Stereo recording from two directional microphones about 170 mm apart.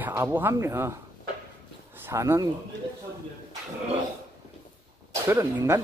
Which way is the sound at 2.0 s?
15° right (ahead or behind).